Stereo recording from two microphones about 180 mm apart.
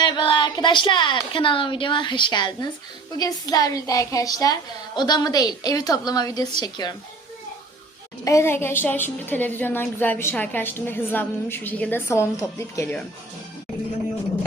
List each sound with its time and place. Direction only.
0.0 s a woman's voice: 25° left (ahead or behind)
8.2 s a woman's voice: 15° left (ahead or behind)